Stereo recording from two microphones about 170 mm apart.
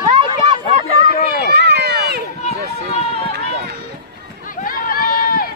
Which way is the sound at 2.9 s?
35° left (ahead or behind).